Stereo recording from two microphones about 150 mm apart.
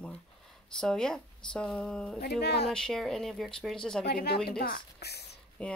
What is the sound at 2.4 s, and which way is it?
Speech, 90° left.